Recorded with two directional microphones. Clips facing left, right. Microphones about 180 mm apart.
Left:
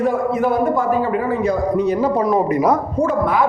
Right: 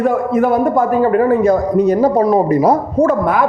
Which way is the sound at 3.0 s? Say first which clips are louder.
Right 4 dB; 50° right (ahead or behind).